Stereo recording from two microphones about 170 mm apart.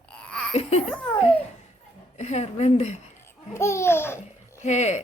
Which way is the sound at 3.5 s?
15° left (ahead or behind).